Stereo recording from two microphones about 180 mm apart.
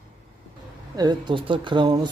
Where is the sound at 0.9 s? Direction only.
25° right (ahead or behind).